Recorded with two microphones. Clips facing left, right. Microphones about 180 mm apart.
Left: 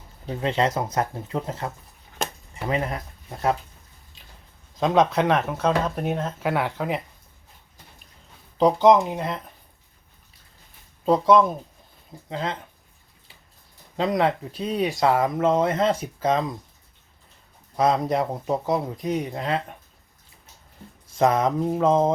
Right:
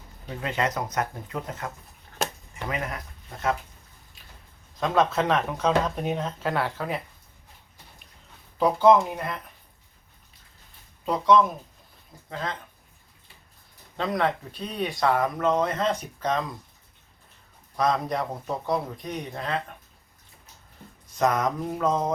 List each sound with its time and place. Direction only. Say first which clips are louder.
0.3 s speech: left 5 dB; 30° left (ahead or behind)
4.8 s speech: left 3 dB; 15° left (ahead or behind)
8.5 s speech: left 2 dB; 20° left (ahead or behind)
12.3 s speech: left 4 dB; 25° left (ahead or behind)
13.9 s speech: left 4 dB; 20° left (ahead or behind)
17.7 s speech: left 4 dB; 25° left (ahead or behind)
21.2 s speech: left 4 dB; 25° left (ahead or behind)